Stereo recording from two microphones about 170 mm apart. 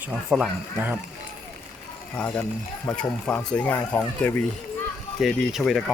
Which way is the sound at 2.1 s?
10° left (ahead or behind).